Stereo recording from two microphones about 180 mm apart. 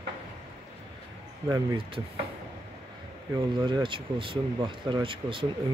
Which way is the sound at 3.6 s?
25° right (ahead or behind).